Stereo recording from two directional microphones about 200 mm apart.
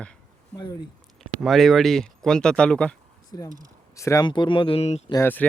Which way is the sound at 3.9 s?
15° left (ahead or behind).